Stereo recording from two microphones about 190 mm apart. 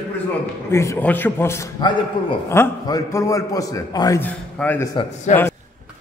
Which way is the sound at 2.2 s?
25° left (ahead or behind).